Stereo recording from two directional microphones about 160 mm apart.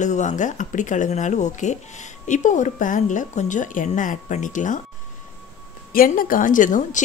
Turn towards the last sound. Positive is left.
turn(degrees=55)  # may be behind; listen again after turning